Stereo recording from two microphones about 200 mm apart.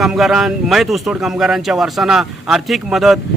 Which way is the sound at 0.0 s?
Centre (ahead or behind).